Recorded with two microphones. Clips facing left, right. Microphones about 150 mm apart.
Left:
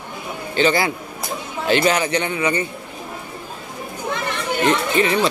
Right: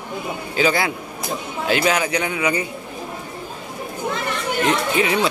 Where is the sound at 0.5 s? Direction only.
Centre (ahead or behind).